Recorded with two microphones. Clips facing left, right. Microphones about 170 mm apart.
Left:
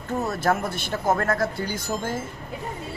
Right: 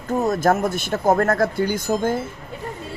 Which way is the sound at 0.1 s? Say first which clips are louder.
Right 6 dB; 40° right (ahead or behind).